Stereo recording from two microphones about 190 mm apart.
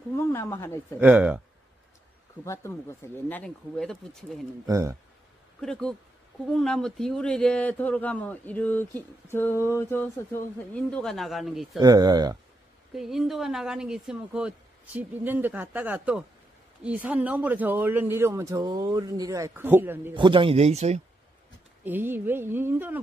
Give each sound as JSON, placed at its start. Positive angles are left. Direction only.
{"t": 0.1, "sound": "a man's voice", "side_deg": 15}
{"t": 0.9, "sound": "speech", "side_deg": -5}
{"t": 2.4, "sound": "a man's voice", "side_deg": 15}
{"t": 4.6, "sound": "speech", "side_deg": -15}
{"t": 5.6, "sound": "a man's voice", "side_deg": 5}
{"t": 11.8, "sound": "speech", "side_deg": -20}
{"t": 12.9, "sound": "speech", "side_deg": 0}
{"t": 20.2, "sound": "speech", "side_deg": -25}
{"t": 21.8, "sound": "speech", "side_deg": -10}